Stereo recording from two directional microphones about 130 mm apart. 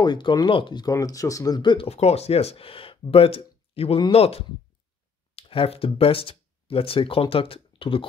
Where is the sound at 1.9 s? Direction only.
55° left (ahead or behind).